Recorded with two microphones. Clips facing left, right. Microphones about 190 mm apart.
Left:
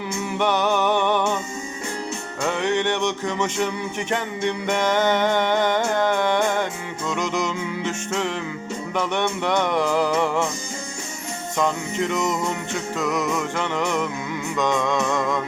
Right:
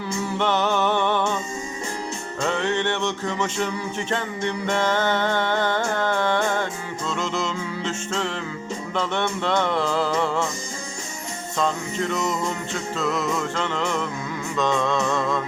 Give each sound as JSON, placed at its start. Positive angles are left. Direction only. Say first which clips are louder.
{"t": 0.3, "sound": "music", "louder": "left 2 dB", "side_deg": 15}
{"t": 2.4, "sound": "music", "louder": "left 1 dB", "side_deg": 15}
{"t": 11.5, "sound": "music", "louder": "left 1 dB", "side_deg": 15}